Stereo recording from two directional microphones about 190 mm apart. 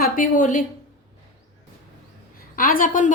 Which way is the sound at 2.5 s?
50° left (ahead or behind).